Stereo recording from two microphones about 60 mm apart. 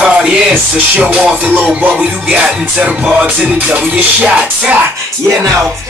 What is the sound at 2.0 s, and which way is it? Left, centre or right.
Music, right.